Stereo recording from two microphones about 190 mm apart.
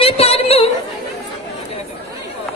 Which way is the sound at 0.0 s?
30° left (ahead or behind).